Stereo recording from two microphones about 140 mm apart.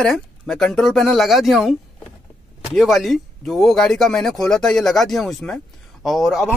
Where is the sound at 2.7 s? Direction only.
Centre (ahead or behind).